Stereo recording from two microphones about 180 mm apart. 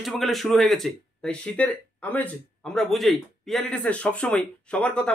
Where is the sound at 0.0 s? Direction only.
Centre (ahead or behind).